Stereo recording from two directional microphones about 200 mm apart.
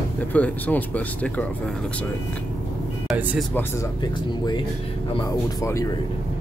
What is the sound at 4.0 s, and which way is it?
Speech, 20° left (ahead or behind).